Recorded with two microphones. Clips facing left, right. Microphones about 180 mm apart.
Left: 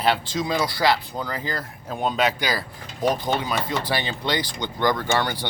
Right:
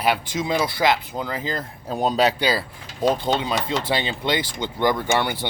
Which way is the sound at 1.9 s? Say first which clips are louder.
Right 3 dB; 35° right (ahead or behind).